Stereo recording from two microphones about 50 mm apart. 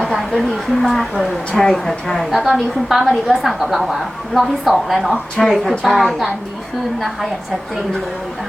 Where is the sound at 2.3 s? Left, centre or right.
Centre.